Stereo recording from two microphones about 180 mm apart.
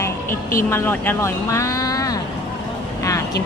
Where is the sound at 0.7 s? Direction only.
10° left (ahead or behind).